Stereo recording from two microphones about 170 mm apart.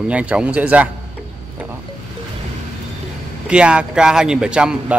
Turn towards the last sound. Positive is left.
turn(degrees=-5)  # may be behind; listen again after turning